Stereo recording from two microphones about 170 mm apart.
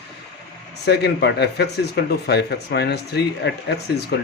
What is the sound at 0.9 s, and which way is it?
Speech, 80° left.